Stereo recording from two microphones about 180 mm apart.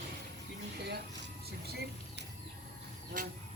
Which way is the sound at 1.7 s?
65° right (ahead or behind).